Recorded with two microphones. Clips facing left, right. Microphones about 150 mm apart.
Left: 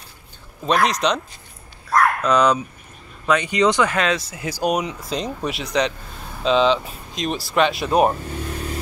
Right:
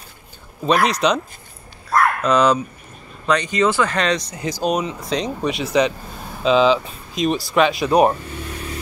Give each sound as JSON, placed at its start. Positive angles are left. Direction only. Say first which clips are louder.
{"t": 0.7, "sound": "speech", "louder": "right 2 dB", "side_deg": 0}
{"t": 1.9, "sound": "dog", "louder": "right 1 dB", "side_deg": 0}
{"t": 3.3, "sound": "speech", "louder": "even", "side_deg": 10}
{"t": 3.9, "sound": "speech", "louder": "right 1 dB", "side_deg": 5}